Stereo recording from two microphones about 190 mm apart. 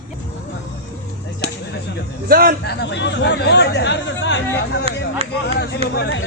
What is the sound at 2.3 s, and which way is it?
Speech, 50° right (ahead or behind).